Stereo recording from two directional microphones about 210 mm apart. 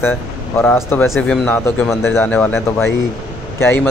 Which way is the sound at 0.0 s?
10° left (ahead or behind).